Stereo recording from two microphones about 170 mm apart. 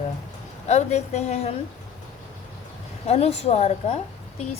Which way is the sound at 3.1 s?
40° left (ahead or behind).